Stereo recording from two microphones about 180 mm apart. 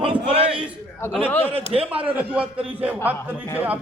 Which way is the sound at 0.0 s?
30° right (ahead or behind).